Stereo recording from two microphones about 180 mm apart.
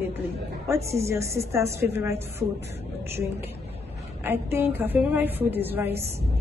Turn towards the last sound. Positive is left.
turn(degrees=-10)  # may be behind; listen again after turning